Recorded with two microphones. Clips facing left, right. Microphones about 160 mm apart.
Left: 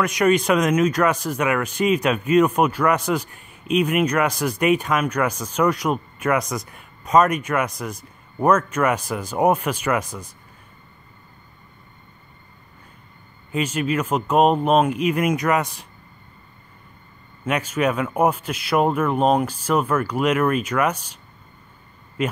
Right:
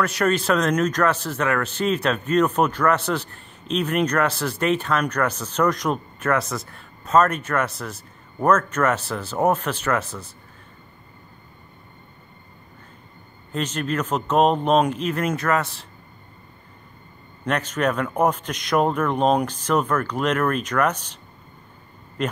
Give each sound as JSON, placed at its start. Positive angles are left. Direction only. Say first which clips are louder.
{"t": 0.0, "sound": "speech", "louder": "left 3 dB", "side_deg": 10}
{"t": 13.5, "sound": "speech", "louder": "left 3 dB", "side_deg": 10}
{"t": 17.5, "sound": "speech", "louder": "left 1 dB", "side_deg": 10}
{"t": 22.2, "sound": "speech", "louder": "left 2 dB", "side_deg": 5}